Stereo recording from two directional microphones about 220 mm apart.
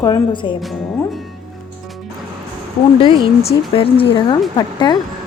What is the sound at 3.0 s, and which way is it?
A woman's voice, 25° left (ahead or behind).